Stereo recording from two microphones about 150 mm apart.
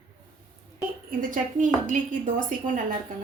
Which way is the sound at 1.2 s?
60° right (ahead or behind).